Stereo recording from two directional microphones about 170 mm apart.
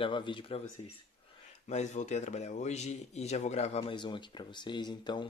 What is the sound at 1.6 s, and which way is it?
Speech, 45° left (ahead or behind).